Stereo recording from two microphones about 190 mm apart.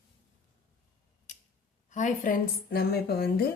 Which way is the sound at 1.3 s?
40° left (ahead or behind).